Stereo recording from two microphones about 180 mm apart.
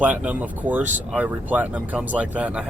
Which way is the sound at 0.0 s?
5° right (ahead or behind).